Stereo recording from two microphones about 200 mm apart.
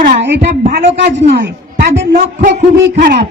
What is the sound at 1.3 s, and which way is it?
Speech, 60° right (ahead or behind).